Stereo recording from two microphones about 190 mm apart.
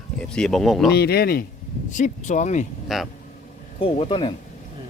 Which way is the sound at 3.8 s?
30° left (ahead or behind).